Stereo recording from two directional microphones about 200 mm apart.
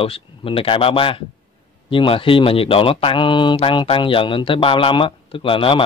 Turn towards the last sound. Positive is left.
turn(degrees=25)  # may be behind; listen again after turning